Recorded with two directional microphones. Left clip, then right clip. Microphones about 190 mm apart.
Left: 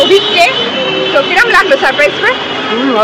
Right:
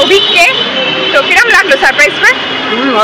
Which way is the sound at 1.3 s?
15° right (ahead or behind).